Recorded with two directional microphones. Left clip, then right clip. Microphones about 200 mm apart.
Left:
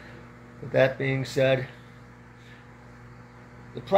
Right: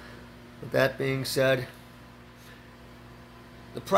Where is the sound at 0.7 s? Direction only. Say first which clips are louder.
Left 3 dB; 25° right (ahead or behind).